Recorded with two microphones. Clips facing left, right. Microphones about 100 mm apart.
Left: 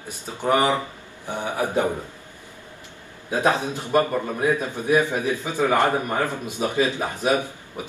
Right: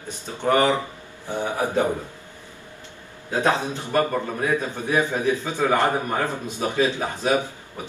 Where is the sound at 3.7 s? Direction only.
15° left (ahead or behind).